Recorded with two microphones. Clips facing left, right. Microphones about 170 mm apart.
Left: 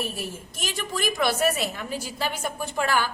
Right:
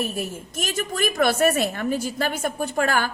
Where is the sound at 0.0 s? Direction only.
45° right (ahead or behind).